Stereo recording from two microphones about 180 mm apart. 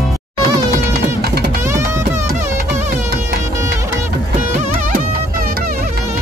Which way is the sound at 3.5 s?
15° right (ahead or behind).